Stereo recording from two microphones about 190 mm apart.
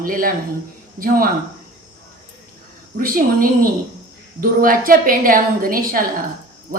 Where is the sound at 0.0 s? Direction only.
50° right (ahead or behind).